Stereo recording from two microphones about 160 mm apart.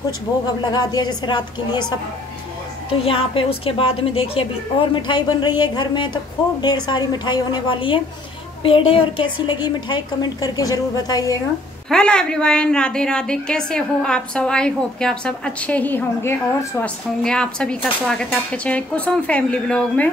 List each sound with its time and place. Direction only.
0.7 s a woman's voice: 25° left (ahead or behind)
2.9 s a woman's voice: 35° left (ahead or behind)
11.9 s a woman's voice: 5° left (ahead or behind)